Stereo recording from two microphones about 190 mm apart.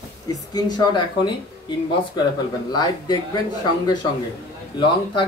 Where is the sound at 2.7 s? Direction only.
20° left (ahead or behind).